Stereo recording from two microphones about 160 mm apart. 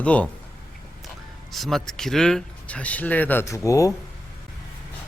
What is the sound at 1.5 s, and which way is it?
Speech, centre (ahead or behind).